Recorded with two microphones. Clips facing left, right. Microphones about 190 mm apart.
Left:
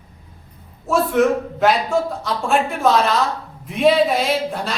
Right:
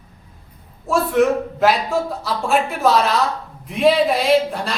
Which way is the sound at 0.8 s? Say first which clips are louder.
Even; centre (ahead or behind).